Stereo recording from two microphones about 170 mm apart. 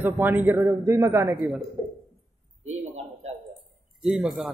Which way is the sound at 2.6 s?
40° right (ahead or behind).